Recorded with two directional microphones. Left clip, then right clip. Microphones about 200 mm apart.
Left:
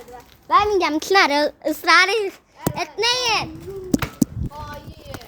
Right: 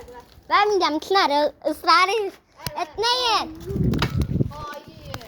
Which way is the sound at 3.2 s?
5° right (ahead or behind).